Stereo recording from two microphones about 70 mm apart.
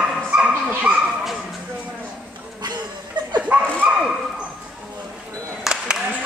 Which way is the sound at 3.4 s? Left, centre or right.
Centre.